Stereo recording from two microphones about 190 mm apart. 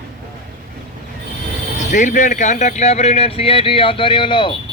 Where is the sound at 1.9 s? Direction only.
40° left (ahead or behind); by 4.5 s 25° left (ahead or behind).